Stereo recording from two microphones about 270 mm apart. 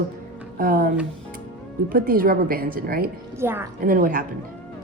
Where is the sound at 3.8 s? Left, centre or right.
Right.